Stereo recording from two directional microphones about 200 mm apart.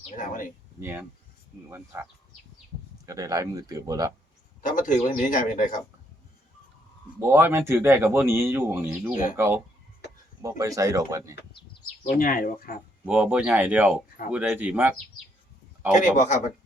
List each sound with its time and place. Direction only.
0.2 s speech: 40° left (ahead or behind)
0.8 s speech: 10° right (ahead or behind)
3.1 s speech: 15° right (ahead or behind)
4.6 s speech: 40° left (ahead or behind)
7.2 s speech: 10° right (ahead or behind)
12.0 s speech: 45° left (ahead or behind)
13.1 s speech: 5° right (ahead or behind)
16.1 s speech: 35° left (ahead or behind)